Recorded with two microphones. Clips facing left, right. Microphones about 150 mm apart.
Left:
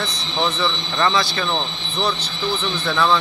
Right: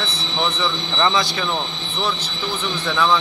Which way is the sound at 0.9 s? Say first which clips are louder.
Even; 15° right (ahead or behind).